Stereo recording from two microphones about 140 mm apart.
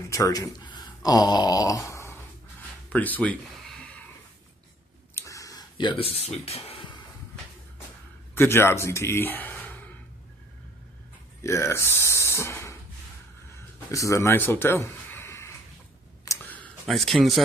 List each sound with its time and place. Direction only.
0.1 s speech: 25° left (ahead or behind)
5.1 s a sound: 20° left (ahead or behind); by 7.0 s 40° left (ahead or behind)
8.4 s speech: 15° left (ahead or behind)
11.4 s speech: 20° left (ahead or behind)
13.9 s speech: 20° left (ahead or behind)
16.4 s a sound: 10° left (ahead or behind)
16.9 s a man's voice: centre (ahead or behind)